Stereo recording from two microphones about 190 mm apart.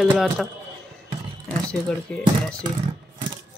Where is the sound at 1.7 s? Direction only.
5° left (ahead or behind).